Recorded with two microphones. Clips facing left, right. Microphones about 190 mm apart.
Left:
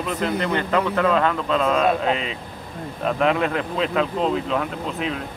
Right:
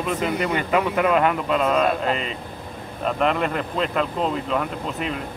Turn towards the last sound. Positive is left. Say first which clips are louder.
# left 1 dB
turn(degrees=0)  # may be behind; listen again after turning